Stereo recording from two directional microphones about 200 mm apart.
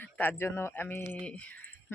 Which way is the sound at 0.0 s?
10° left (ahead or behind).